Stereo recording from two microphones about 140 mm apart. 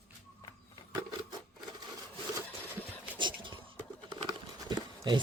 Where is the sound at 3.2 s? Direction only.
35° right (ahead or behind).